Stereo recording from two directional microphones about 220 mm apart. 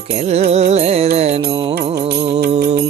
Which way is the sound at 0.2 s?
30° right (ahead or behind).